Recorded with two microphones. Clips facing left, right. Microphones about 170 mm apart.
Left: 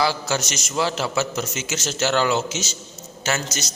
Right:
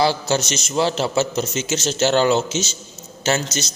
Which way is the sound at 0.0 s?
25° right (ahead or behind).